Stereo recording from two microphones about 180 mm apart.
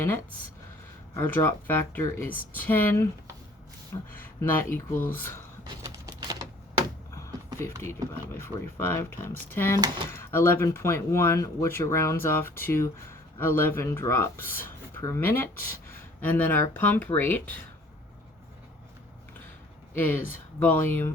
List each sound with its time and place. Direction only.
1.1 s speech: 10° left (ahead or behind)
4.1 s speech: 10° left (ahead or behind)
5.6 s typing: 20° right (ahead or behind)
7.6 s speech: 15° left (ahead or behind)
19.9 s speech: 10° left (ahead or behind)